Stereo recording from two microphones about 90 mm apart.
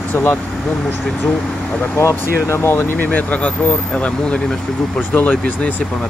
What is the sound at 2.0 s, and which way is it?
Speech, 35° left (ahead or behind).